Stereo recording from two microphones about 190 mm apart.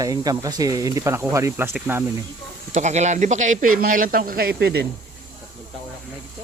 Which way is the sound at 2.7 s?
40° right (ahead or behind).